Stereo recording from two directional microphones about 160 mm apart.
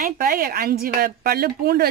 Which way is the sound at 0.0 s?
65° right (ahead or behind).